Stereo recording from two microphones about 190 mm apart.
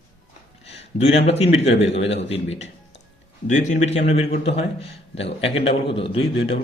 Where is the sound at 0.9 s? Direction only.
30° left (ahead or behind).